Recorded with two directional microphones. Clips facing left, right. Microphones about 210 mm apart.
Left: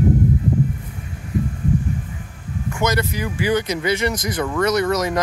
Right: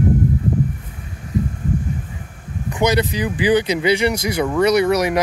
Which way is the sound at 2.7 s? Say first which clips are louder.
Right 4 dB; 15° right (ahead or behind).